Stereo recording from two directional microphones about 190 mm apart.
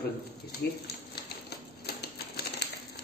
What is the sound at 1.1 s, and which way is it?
Typewriter, 60° left (ahead or behind).